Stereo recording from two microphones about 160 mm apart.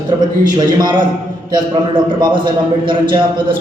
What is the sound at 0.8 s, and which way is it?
Speech, 30° right (ahead or behind).